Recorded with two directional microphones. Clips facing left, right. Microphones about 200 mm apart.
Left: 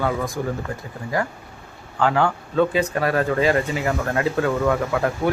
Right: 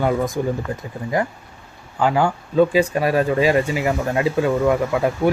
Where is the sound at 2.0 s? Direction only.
10° right (ahead or behind).